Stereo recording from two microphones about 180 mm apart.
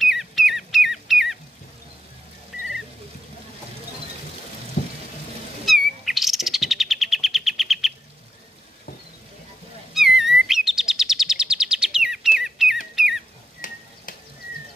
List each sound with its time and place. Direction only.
0.0 s rodents: centre (ahead or behind)
5.7 s bird: centre (ahead or behind)
9.9 s chirp: centre (ahead or behind)
12.4 s bird: centre (ahead or behind)
13.6 s a sound: 45° left (ahead or behind)